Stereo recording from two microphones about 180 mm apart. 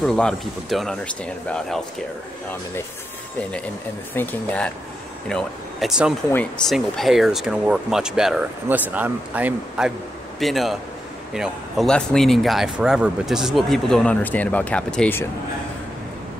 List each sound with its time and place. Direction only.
0.0 s speech: 5° left (ahead or behind)
4.1 s speech: 10° left (ahead or behind)